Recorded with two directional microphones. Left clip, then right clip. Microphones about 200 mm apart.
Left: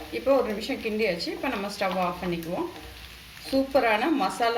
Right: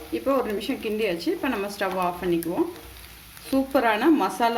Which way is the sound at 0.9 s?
50° right (ahead or behind).